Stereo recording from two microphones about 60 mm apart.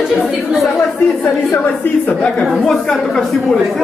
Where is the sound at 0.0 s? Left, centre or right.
Centre.